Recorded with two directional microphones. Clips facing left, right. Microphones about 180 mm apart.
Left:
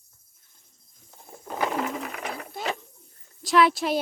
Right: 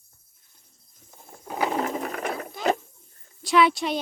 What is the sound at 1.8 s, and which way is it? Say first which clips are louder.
Sewing machine: right 3 dB; 40° right (ahead or behind).